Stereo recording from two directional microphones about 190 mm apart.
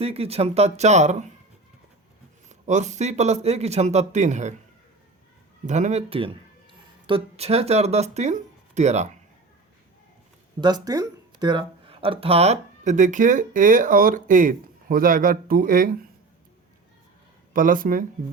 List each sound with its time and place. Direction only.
0.0 s a man's voice: 30° right (ahead or behind)
2.5 s a man's voice: 40° right (ahead or behind)
5.6 s a man's voice: 40° right (ahead or behind)
10.6 s speech: 20° right (ahead or behind); by 16.0 s 45° right (ahead or behind)
17.5 s speech: 45° right (ahead or behind)